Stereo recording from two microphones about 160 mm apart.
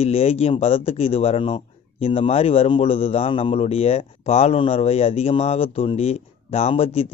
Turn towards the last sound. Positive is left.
turn(degrees=35)  # may be behind; listen again after turning